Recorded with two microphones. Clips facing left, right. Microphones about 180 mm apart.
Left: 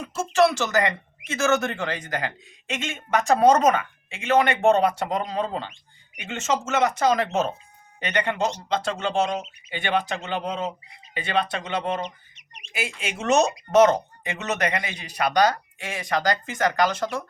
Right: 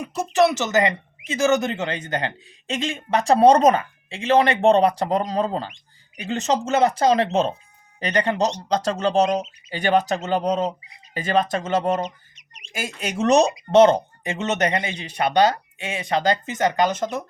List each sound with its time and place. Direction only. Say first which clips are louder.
0.0 s speech: right 1 dB; 15° right (ahead or behind); by 13.4 s 40° right (ahead or behind)
13.7 s speech: right 3 dB; 30° right (ahead or behind)